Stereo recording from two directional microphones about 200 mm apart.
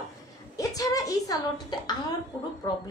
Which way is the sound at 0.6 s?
15° left (ahead or behind).